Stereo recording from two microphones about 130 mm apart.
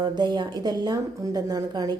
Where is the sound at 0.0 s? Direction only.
35° right (ahead or behind).